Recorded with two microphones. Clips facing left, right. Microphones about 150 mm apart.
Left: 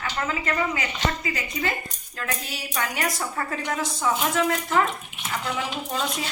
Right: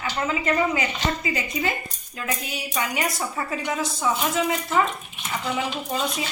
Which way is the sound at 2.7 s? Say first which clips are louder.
Right 1 dB; 10° right (ahead or behind).